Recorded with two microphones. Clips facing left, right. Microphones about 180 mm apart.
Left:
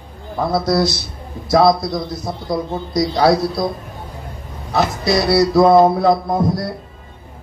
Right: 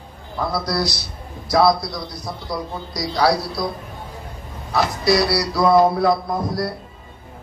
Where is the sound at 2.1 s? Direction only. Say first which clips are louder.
Left 6 dB; 25° left (ahead or behind).